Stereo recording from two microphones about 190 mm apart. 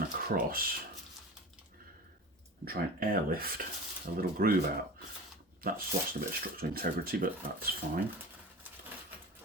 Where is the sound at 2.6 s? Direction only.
50° right (ahead or behind).